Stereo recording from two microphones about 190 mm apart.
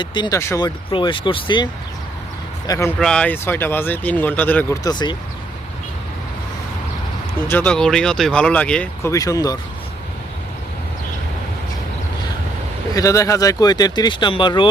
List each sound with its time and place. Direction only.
0.0 s speech: 25° left (ahead or behind)
0.9 s speech: 25° left (ahead or behind)
2.6 s speech: 15° left (ahead or behind)
3.0 s speech: 5° left (ahead or behind); by 5.1 s 20° left (ahead or behind)
7.4 s speech: 10° left (ahead or behind)
9.1 s speech: 20° left (ahead or behind)
12.9 s speech: 15° left (ahead or behind)